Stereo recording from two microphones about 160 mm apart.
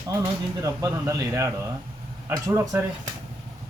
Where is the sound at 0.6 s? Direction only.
20° right (ahead or behind).